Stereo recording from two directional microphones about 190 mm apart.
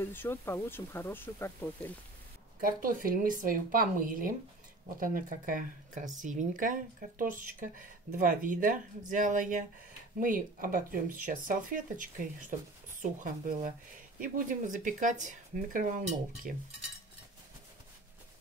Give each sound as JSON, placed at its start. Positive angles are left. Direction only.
{"t": 0.0, "sound": "speech", "side_deg": 10}
{"t": 2.6, "sound": "speech", "side_deg": -50}